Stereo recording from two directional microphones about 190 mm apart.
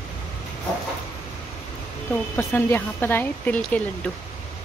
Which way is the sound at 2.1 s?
10° left (ahead or behind).